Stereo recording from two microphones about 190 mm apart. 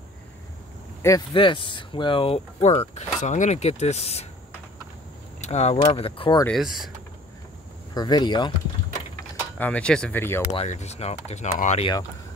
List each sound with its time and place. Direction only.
1.0 s speech: 20° left (ahead or behind)
5.4 s speech: 35° left (ahead or behind)
6.4 s speech: centre (ahead or behind)
7.9 s speech: 20° left (ahead or behind)
9.6 s speech: 5° left (ahead or behind)
10.5 s speech: 35° left (ahead or behind)